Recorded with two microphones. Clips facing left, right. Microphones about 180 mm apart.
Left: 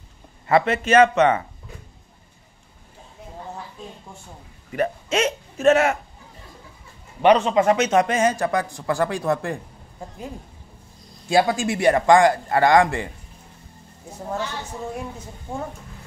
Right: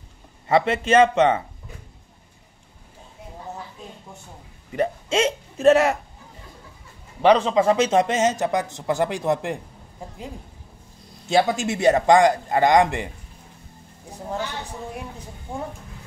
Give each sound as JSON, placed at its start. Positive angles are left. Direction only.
{"t": 0.5, "sound": "a man's voice", "side_deg": -25}
{"t": 4.7, "sound": "speech", "side_deg": -30}
{"t": 7.2, "sound": "a man's voice", "side_deg": -30}
{"t": 11.2, "sound": "a man's voice", "side_deg": -20}